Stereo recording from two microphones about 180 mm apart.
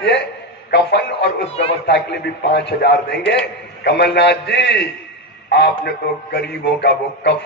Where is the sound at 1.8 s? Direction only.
70° left (ahead or behind).